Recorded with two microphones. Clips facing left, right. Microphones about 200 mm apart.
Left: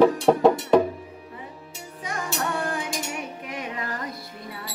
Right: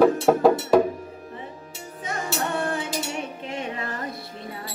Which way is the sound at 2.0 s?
25° right (ahead or behind).